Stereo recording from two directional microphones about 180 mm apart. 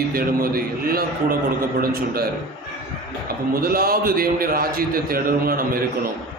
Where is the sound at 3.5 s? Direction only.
55° right (ahead or behind).